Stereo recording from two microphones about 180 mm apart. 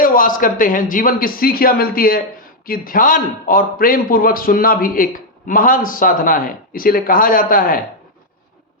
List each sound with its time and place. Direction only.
0.0 s a man's voice: 50° left (ahead or behind)